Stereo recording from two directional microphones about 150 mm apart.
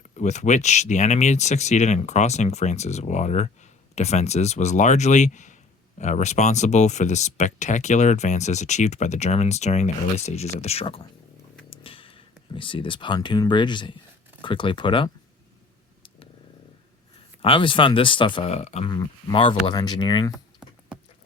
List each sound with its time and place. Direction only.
0.0 s speech: 50° left (ahead or behind); by 15.1 s 35° left (ahead or behind)
17.4 s speech: 35° left (ahead or behind)
18.9 s speech: 35° left (ahead or behind)
20.3 s typing: 5° right (ahead or behind)